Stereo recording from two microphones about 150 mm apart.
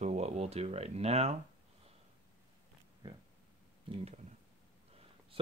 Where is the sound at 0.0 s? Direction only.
50° right (ahead or behind).